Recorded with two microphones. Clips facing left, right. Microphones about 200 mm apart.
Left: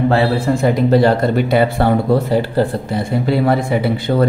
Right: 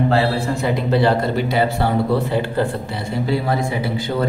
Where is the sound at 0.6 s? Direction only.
45° left (ahead or behind).